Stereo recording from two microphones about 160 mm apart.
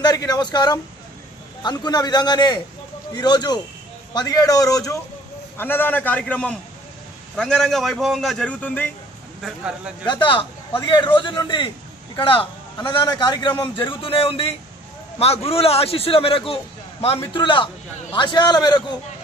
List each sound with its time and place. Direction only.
0.0 s a man's voice: 25° left (ahead or behind)
9.4 s speech: 5° right (ahead or behind)
10.0 s a man's voice: 30° left (ahead or behind)